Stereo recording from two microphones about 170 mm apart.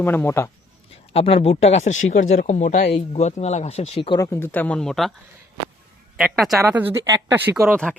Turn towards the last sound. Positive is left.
turn(degrees=5)  # may be behind; listen again after turning